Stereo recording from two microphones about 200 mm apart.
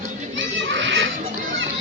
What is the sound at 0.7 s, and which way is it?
Children playing, 65° right (ahead or behind).